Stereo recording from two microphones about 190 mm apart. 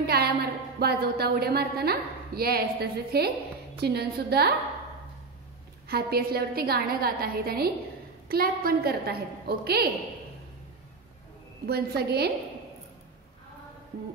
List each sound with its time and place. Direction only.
0.0 s a woman's voice: 55° right (ahead or behind)
5.9 s a woman's voice: 55° right (ahead or behind)
11.6 s a woman's voice: 55° right (ahead or behind)